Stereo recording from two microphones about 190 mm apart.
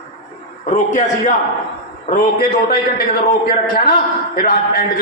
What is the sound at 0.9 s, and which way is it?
Speech, 40° left (ahead or behind).